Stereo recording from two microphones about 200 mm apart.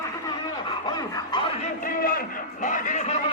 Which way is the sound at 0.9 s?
20° left (ahead or behind).